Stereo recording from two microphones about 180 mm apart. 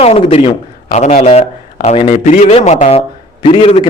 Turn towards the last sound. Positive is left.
turn(degrees=30)  # may be behind; listen again after turning